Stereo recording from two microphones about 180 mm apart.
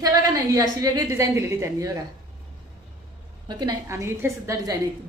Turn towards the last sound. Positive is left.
turn(degrees=-15)  # may be behind; listen again after turning